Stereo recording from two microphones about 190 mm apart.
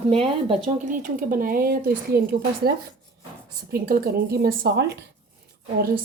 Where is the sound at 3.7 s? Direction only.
50° right (ahead or behind).